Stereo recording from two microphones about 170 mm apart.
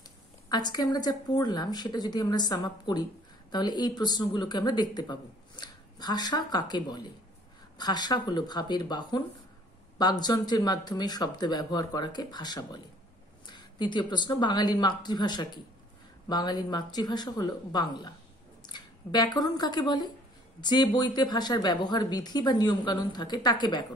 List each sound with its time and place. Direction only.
0.5 s speech: 25° left (ahead or behind)